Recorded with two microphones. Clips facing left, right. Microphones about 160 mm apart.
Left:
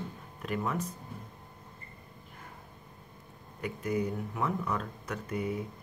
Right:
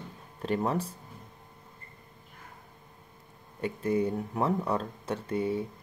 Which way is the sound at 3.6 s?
30° right (ahead or behind).